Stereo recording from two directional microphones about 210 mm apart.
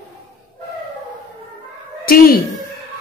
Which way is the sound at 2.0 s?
45° left (ahead or behind).